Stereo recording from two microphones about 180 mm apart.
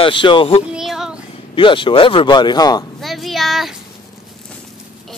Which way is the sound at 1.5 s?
25° left (ahead or behind).